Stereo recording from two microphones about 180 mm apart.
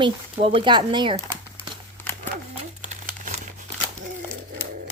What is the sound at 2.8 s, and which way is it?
Crumpling, 45° right (ahead or behind).